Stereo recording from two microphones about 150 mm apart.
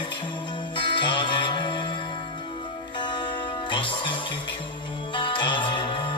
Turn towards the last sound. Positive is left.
turn(degrees=35)  # may be behind; listen again after turning